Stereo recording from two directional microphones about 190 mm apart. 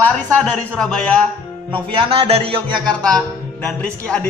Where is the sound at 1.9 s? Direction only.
30° right (ahead or behind).